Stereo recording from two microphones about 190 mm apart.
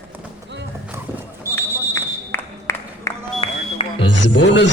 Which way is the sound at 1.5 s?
10° left (ahead or behind).